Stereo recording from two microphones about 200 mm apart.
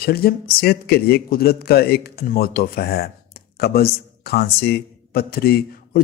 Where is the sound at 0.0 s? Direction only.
50° left (ahead or behind).